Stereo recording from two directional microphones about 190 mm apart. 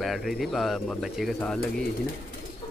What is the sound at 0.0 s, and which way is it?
Speech, centre (ahead or behind).